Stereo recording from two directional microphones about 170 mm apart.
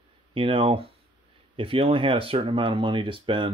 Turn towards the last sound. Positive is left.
turn(degrees=-30)  # may be behind; listen again after turning